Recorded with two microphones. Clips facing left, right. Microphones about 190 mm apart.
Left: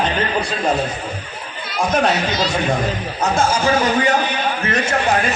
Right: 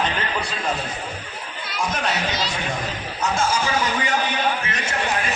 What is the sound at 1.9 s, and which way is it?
A man's voice, 45° left (ahead or behind).